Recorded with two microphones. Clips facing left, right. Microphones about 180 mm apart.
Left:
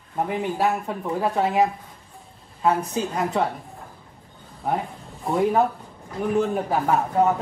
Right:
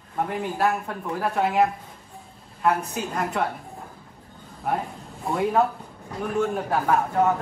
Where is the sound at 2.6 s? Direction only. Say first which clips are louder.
Left 2 dB; 20° left (ahead or behind).